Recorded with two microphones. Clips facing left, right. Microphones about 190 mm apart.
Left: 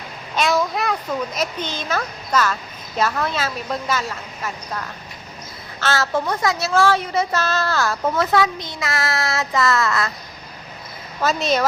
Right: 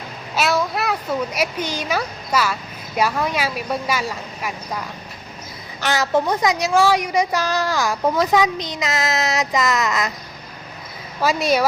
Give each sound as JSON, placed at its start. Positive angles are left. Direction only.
{"t": 0.3, "sound": "a child's voice", "side_deg": -5}
{"t": 11.2, "sound": "a child's voice", "side_deg": -10}